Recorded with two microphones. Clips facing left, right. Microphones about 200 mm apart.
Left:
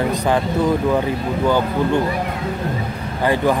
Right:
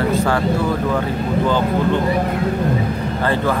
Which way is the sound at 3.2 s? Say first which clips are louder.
Left 3 dB; 15° left (ahead or behind).